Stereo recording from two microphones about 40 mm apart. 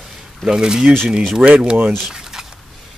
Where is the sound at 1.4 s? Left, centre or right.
Right.